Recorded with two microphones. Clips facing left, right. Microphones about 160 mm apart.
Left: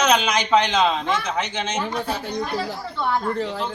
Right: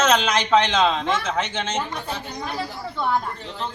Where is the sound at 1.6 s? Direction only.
10° left (ahead or behind).